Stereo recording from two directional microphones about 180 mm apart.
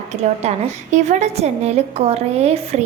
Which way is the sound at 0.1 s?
40° right (ahead or behind).